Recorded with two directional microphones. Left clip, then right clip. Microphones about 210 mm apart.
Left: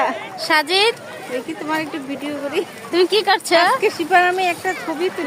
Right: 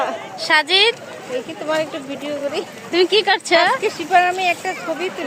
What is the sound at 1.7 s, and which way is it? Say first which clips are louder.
Speech: right 2 dB; 25° left (ahead or behind).